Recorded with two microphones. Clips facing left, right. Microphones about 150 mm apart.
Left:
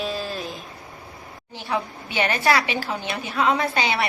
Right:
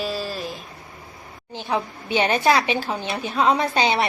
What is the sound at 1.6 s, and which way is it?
A woman's voice, 20° right (ahead or behind).